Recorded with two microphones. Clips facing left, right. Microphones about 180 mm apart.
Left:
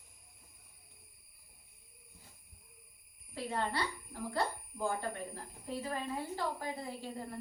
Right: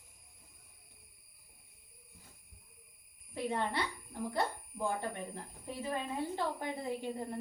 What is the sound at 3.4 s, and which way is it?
A woman's voice, 20° right (ahead or behind).